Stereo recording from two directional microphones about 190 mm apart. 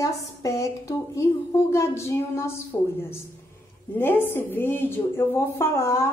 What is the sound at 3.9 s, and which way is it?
A woman's voice, 10° left (ahead or behind).